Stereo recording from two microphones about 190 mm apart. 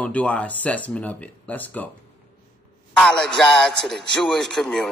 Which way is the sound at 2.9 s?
5° left (ahead or behind).